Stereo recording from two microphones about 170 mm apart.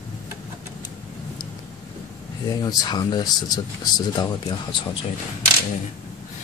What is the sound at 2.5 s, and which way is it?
Speech, 25° left (ahead or behind).